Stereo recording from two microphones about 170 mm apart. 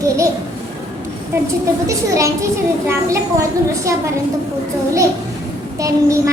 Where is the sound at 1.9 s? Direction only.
20° right (ahead or behind).